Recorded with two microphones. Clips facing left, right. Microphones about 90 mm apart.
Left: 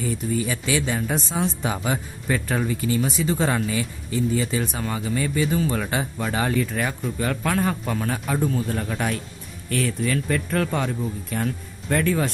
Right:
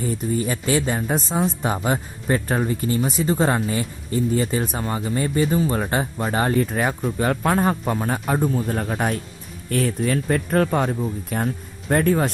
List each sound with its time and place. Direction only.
0.0 s speech: 40° right (ahead or behind)